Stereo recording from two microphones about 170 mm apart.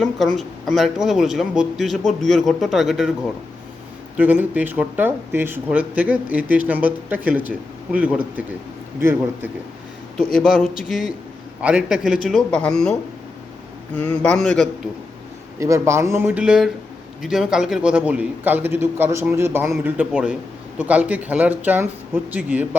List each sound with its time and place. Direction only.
0.0 s speech: centre (ahead or behind)
4.2 s speech: 10° right (ahead or behind)
10.3 s speech: centre (ahead or behind)
15.5 s speech: 20° right (ahead or behind)
16.4 s speech: 5° right (ahead or behind)